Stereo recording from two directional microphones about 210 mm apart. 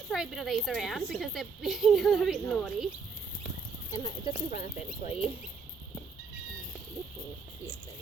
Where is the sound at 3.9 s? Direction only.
20° left (ahead or behind).